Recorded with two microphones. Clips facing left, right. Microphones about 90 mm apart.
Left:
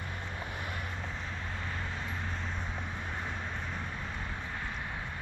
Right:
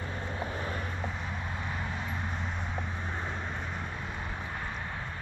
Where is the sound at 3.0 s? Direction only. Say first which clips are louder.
Right 2 dB; 20° right (ahead or behind).